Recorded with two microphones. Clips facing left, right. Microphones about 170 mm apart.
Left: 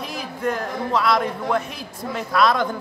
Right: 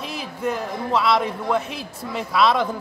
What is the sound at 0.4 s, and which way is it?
A man's voice, 5° right (ahead or behind).